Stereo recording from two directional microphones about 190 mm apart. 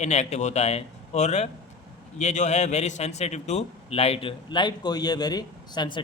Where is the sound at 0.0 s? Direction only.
35° left (ahead or behind).